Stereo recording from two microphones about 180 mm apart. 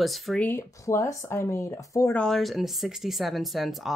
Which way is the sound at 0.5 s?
15° left (ahead or behind).